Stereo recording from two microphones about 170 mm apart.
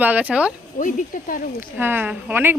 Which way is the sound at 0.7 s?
50° left (ahead or behind).